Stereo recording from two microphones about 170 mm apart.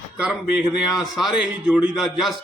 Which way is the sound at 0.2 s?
5° right (ahead or behind).